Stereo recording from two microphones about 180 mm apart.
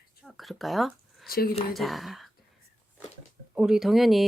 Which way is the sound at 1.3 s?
55° left (ahead or behind).